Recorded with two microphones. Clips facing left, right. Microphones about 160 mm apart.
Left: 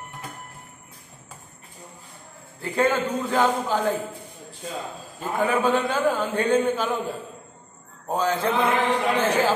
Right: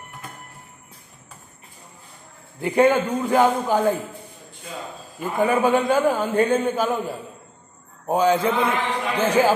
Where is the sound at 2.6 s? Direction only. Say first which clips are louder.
Right 5 dB; 15° right (ahead or behind).